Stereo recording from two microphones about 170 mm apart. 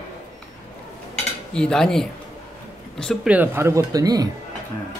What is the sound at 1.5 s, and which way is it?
Speech, 5° left (ahead or behind).